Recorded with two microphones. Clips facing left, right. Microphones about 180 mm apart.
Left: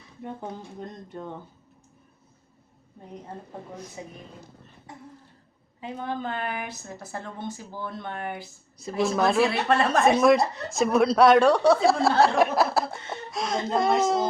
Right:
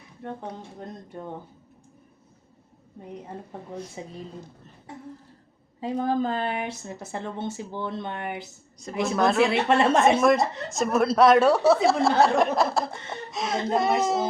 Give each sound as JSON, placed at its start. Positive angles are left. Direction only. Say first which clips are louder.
{"t": 4.0, "sound": "speech", "louder": "right 2 dB", "side_deg": -25}
{"t": 5.8, "sound": "speech", "louder": "right 7 dB", "side_deg": -35}
{"t": 8.8, "sound": "speech", "louder": "even", "side_deg": 0}
{"t": 9.4, "sound": "speech", "louder": "right 2 dB", "side_deg": -25}
{"t": 10.2, "sound": "speech", "louder": "left 1 dB", "side_deg": 0}